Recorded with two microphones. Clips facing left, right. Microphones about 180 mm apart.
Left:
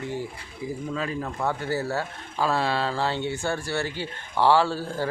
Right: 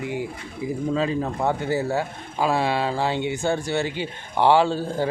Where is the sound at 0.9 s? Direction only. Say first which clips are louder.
Right 8 dB; 25° right (ahead or behind).